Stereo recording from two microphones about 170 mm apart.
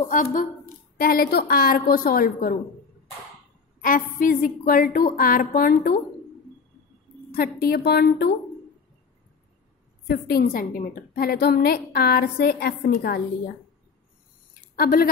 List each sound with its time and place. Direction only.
0.1 s a woman's voice: 45° left (ahead or behind)
0.9 s a woman's voice: 60° left (ahead or behind)
3.8 s a woman's voice: 55° left (ahead or behind)
7.2 s a woman's voice: 65° left (ahead or behind)
10.0 s a woman's voice: 70° left (ahead or behind)
14.8 s a woman's voice: 60° left (ahead or behind)